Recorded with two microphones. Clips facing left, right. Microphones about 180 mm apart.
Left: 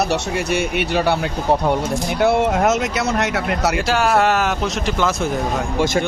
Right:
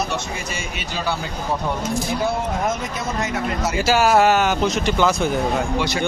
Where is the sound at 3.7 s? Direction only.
Centre (ahead or behind).